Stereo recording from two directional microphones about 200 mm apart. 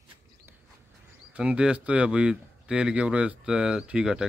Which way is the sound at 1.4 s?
5° right (ahead or behind).